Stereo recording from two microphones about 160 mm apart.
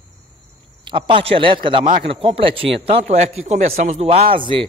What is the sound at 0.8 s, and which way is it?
A man's voice, 30° right (ahead or behind).